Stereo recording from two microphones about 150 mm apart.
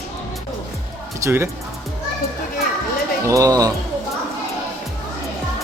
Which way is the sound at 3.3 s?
20° right (ahead or behind).